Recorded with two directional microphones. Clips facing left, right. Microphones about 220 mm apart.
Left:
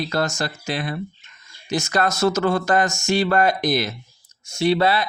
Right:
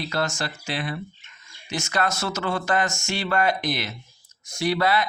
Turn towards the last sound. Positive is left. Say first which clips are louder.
# left 4 dB
turn(degrees=30)  # may be behind; listen again after turning